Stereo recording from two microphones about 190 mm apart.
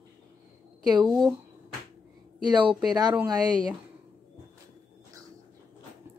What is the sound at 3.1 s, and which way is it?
Speech, 15° right (ahead or behind).